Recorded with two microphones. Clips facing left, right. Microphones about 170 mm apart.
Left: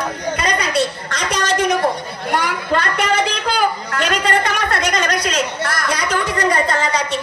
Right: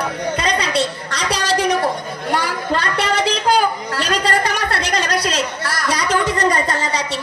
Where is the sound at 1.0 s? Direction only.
35° right (ahead or behind).